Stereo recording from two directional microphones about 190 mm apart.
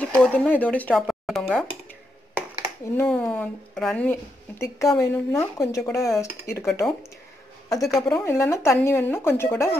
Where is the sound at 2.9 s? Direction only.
10° left (ahead or behind).